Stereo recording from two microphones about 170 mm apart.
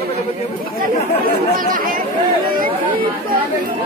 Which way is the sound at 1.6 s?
55° right (ahead or behind).